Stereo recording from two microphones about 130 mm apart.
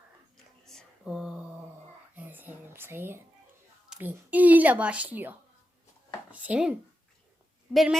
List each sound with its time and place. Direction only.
0.6 s a sound: 5° left (ahead or behind)
2.1 s whispering: 15° right (ahead or behind)
3.8 s a woman's voice: 10° right (ahead or behind)